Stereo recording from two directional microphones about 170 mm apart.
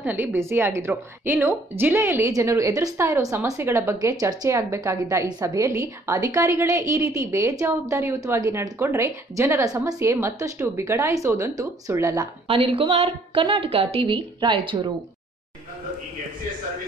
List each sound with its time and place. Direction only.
0.0 s a woman's voice: 10° right (ahead or behind)
12.4 s a woman's voice: 35° right (ahead or behind)